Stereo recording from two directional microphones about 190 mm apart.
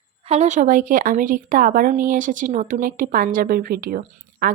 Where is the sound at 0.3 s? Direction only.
35° right (ahead or behind).